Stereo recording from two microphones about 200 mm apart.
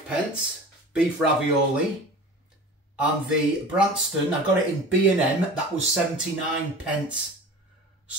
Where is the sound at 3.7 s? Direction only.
5° right (ahead or behind).